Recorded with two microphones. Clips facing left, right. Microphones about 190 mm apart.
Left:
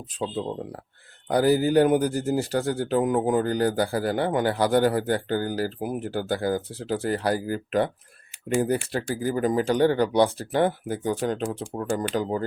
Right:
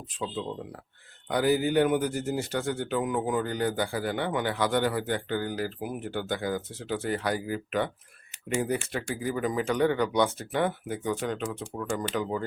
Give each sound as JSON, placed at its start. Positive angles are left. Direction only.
{"t": 0.2, "sound": "speech", "side_deg": 35}